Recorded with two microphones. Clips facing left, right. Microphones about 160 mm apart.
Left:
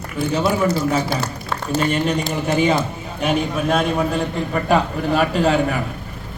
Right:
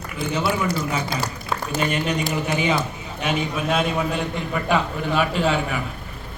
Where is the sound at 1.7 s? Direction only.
40° left (ahead or behind).